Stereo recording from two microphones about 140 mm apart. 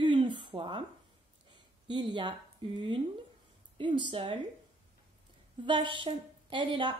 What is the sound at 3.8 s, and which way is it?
Speech, 35° right (ahead or behind).